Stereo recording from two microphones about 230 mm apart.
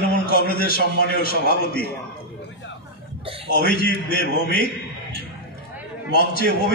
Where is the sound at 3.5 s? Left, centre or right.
Left.